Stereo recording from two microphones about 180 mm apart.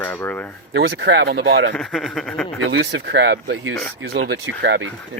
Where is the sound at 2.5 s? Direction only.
80° right.